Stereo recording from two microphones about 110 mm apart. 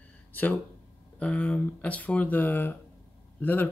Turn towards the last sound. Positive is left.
turn(degrees=15)  # may be behind; listen again after turning